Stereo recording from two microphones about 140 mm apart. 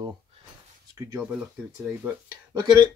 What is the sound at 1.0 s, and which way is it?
Speech, 20° right (ahead or behind).